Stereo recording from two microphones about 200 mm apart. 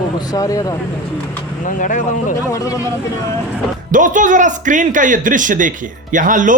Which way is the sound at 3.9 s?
40° right (ahead or behind).